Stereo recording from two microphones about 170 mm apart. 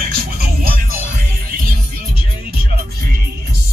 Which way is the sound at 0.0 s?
60° right (ahead or behind).